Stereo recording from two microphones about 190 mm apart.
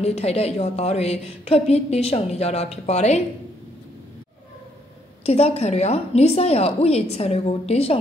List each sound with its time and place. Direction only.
0.0 s a woman's voice: 35° left (ahead or behind)
5.2 s a woman's voice: 35° left (ahead or behind)